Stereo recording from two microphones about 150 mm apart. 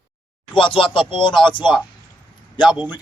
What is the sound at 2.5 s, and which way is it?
Speech, 10° right (ahead or behind).